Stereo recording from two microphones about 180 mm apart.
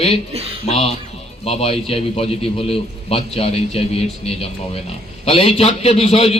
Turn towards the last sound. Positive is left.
turn(degrees=35)  # may be behind; listen again after turning